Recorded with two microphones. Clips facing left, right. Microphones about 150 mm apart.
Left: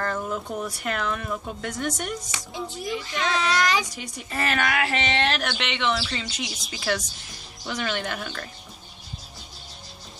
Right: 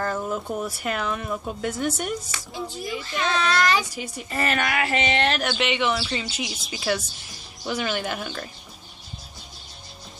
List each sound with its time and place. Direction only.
0.0 s speech: 10° right (ahead or behind)
2.3 s a child's voice: 20° left (ahead or behind)
3.8 s a woman's voice: 5° right (ahead or behind)